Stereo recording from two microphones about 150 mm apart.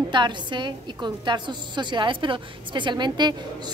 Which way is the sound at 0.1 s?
30° right (ahead or behind).